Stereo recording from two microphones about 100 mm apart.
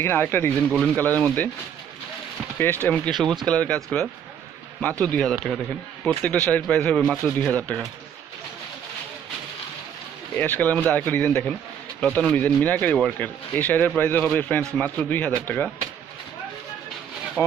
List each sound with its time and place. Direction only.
0.0 s speech: 20° left (ahead or behind)
2.6 s speech: 15° left (ahead or behind)
3.1 s speech: centre (ahead or behind)
3.4 s speech: 10° left (ahead or behind)
10.3 s speech: 20° left (ahead or behind)
17.4 s speech: 20° left (ahead or behind)